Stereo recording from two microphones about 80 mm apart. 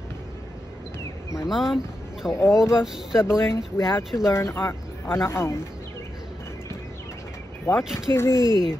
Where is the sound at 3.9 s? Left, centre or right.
Left.